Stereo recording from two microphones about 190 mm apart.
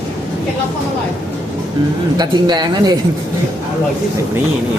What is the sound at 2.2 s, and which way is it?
Speech, 20° right (ahead or behind).